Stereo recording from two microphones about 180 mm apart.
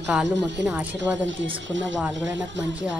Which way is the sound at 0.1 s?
5° right (ahead or behind).